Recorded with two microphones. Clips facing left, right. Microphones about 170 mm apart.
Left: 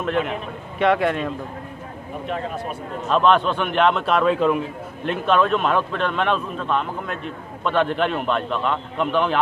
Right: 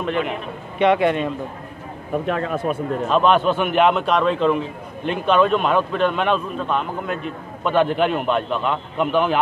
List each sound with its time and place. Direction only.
0.0 s a man's voice: centre (ahead or behind)
2.2 s speech: 70° right (ahead or behind)
3.1 s a man's voice: centre (ahead or behind)